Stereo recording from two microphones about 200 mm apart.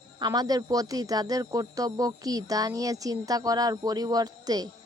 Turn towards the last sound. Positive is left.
turn(degrees=-20)  # may be behind; listen again after turning